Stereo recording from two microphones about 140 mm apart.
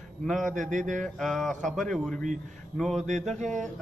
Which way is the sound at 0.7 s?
65° right (ahead or behind).